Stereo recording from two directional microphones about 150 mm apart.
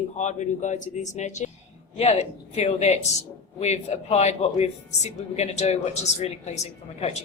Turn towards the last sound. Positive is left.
turn(degrees=50)  # may be behind; listen again after turning